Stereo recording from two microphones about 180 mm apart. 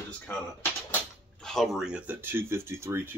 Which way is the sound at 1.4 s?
Centre (ahead or behind).